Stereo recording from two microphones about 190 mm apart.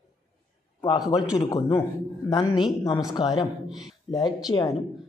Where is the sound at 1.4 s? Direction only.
25° left (ahead or behind).